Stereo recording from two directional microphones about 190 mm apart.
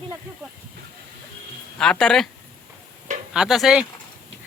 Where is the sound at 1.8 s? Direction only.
5° left (ahead or behind).